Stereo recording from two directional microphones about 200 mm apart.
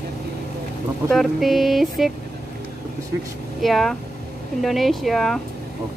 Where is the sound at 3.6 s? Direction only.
Centre (ahead or behind).